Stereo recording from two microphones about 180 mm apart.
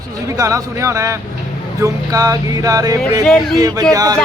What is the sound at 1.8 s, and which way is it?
Music, 20° right (ahead or behind).